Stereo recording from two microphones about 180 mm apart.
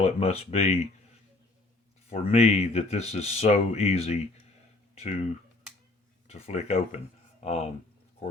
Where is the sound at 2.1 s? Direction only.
35° left (ahead or behind).